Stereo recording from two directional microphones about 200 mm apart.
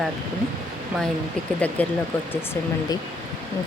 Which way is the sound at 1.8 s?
5° left (ahead or behind).